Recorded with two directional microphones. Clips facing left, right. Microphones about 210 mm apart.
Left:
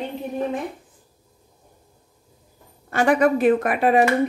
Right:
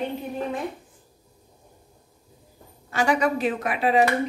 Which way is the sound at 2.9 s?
55° left (ahead or behind).